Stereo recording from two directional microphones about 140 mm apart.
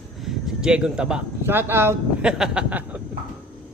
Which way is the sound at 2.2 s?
5° right (ahead or behind).